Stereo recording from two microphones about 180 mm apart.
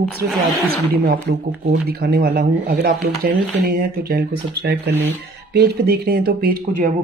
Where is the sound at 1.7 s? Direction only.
65° right (ahead or behind).